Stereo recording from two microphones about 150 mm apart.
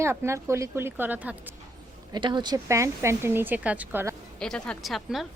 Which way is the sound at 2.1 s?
30° right (ahead or behind).